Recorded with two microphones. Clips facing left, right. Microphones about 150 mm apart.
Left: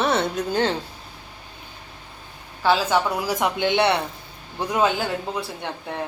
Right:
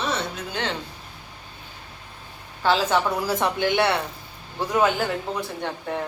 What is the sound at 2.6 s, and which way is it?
A woman's voice, 10° left (ahead or behind).